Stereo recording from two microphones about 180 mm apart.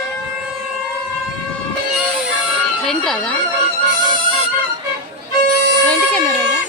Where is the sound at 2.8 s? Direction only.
5° left (ahead or behind).